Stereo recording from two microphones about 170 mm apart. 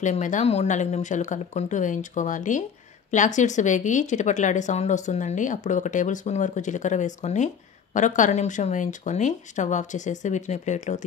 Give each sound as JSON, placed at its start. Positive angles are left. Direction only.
{"t": 0.0, "sound": "speech", "side_deg": 45}